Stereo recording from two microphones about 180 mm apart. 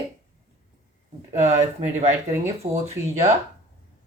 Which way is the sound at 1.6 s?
35° right (ahead or behind).